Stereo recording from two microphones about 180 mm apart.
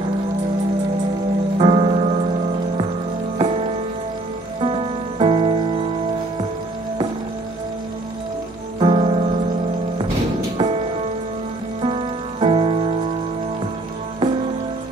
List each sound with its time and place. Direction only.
1.6 s music: 30° right (ahead or behind)
3.3 s music: 30° right (ahead or behind)
8.7 s music: 30° right (ahead or behind)
10.6 s music: 30° right (ahead or behind)